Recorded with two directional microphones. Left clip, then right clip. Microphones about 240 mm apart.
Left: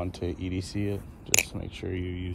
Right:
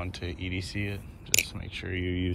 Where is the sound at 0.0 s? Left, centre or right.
Left.